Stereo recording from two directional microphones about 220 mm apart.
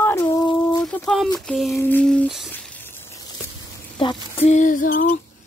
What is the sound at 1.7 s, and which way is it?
Humming, 10° left (ahead or behind).